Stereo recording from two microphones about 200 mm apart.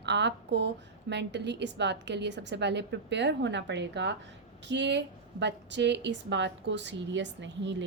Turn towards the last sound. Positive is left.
turn(degrees=-65)  # may be behind; listen again after turning